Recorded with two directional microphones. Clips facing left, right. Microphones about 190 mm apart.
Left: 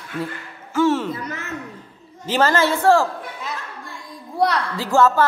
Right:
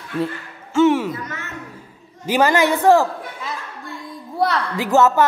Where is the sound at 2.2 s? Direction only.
15° right (ahead or behind).